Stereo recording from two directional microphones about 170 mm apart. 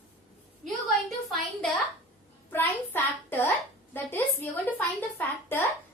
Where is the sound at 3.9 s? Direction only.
10° left (ahead or behind).